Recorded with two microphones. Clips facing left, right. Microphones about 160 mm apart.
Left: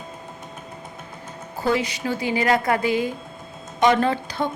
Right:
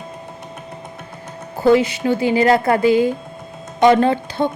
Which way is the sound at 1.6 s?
25° right (ahead or behind).